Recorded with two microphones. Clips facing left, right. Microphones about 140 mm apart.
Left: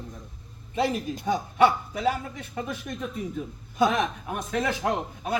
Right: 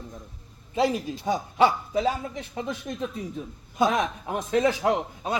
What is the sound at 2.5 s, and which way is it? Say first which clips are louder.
Speech: right 1 dB; 25° right (ahead or behind).